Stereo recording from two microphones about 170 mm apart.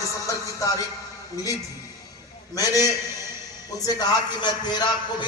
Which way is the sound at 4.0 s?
25° left (ahead or behind).